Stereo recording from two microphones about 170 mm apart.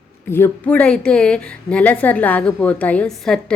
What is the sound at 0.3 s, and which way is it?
A woman's voice, 15° left (ahead or behind).